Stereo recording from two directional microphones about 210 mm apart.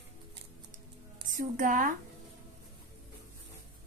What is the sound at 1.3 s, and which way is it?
Speech, 40° right (ahead or behind).